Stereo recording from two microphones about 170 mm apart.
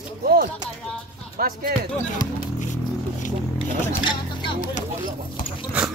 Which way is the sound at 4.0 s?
30° left (ahead or behind).